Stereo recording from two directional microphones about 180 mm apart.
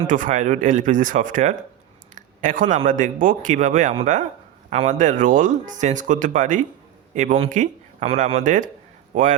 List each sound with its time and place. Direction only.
0.1 s a man's voice: 45° right (ahead or behind)